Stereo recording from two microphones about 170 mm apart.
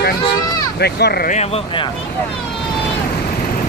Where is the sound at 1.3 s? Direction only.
40° left (ahead or behind).